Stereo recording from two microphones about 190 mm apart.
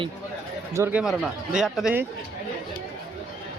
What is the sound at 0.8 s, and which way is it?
Speech, 10° right (ahead or behind).